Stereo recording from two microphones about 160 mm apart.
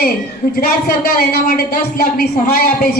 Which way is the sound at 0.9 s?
70° left (ahead or behind).